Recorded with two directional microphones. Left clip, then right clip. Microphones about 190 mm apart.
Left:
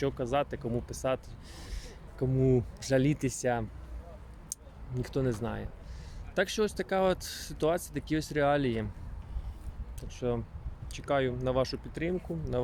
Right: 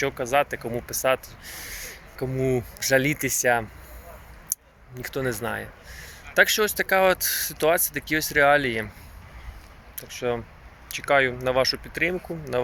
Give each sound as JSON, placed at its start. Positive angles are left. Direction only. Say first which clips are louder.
{"t": 0.0, "sound": "speech", "louder": "right 8 dB", "side_deg": 10}
{"t": 4.5, "sound": "a sound", "louder": "right 10 dB", "side_deg": 5}
{"t": 4.9, "sound": "speech", "louder": "right 5 dB", "side_deg": 5}
{"t": 10.0, "sound": "speech", "louder": "right 6 dB", "side_deg": 5}